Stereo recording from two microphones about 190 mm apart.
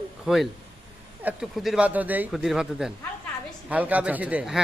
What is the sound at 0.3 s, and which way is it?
A man's voice, 5° right (ahead or behind).